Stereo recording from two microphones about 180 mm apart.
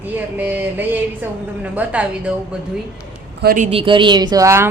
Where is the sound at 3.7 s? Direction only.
25° right (ahead or behind).